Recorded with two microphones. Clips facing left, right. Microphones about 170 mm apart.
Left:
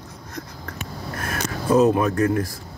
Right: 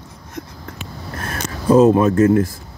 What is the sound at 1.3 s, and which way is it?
Speech, 30° right (ahead or behind).